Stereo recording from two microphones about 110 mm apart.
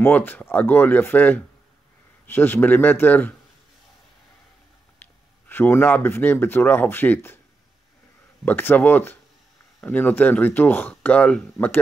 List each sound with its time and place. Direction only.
0.0 s speech: 20° left (ahead or behind)
5.5 s speech: 20° left (ahead or behind)
8.5 s speech: 15° left (ahead or behind)